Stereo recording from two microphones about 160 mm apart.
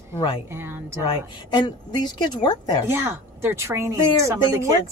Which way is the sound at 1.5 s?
25° left (ahead or behind).